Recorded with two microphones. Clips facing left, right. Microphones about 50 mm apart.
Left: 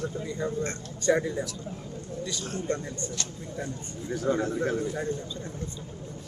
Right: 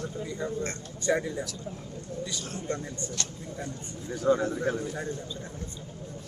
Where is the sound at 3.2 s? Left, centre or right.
Left.